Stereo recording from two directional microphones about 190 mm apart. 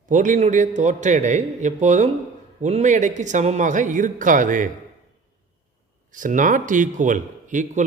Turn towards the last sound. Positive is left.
turn(degrees=-40)  # may be behind; listen again after turning